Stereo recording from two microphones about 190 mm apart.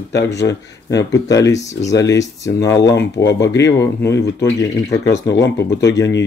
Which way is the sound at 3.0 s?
65° left (ahead or behind).